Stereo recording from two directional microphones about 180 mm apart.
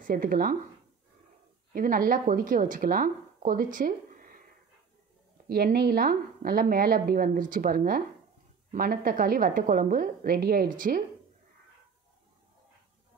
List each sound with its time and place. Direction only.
0.0 s a woman's voice: 50° right (ahead or behind)
1.7 s a woman's voice: 50° right (ahead or behind)
5.5 s a woman's voice: 60° right (ahead or behind)